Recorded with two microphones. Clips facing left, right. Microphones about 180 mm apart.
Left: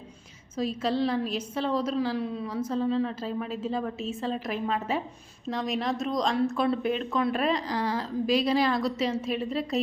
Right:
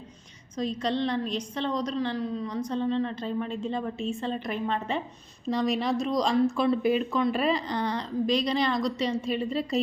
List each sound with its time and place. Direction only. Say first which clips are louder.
0.5 s a woman's voice: left 1 dB; 5° left (ahead or behind)